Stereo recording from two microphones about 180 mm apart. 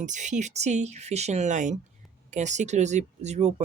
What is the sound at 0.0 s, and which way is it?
Speech, 45° right (ahead or behind).